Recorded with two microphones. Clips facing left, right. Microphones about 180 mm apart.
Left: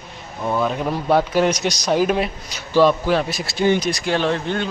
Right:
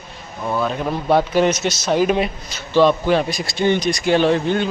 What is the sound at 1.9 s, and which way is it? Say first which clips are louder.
A man's voice: right 2 dB; centre (ahead or behind).